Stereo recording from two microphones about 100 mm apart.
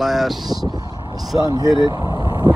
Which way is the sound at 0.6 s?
40° right (ahead or behind).